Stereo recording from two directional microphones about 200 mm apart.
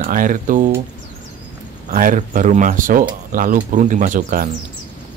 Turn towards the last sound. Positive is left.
turn(degrees=-40)  # may be behind; listen again after turning